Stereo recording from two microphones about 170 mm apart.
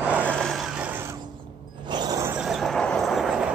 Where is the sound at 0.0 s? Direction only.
10° right (ahead or behind).